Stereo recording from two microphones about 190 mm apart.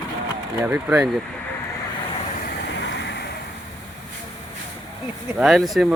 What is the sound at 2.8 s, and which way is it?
Vehicle, 70° left (ahead or behind).